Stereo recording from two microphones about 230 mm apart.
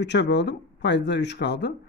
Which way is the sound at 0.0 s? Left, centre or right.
Left.